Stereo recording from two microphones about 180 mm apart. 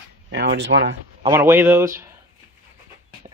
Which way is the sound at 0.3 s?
90° right.